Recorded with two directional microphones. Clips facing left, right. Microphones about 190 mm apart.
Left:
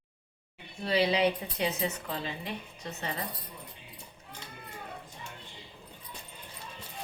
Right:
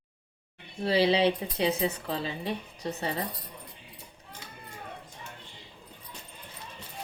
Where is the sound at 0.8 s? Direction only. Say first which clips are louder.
Right 3 dB; 30° right (ahead or behind).